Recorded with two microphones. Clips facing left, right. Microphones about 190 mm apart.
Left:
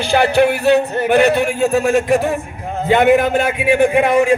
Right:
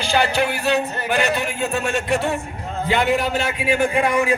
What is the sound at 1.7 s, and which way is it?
A man's voice, 45° left (ahead or behind).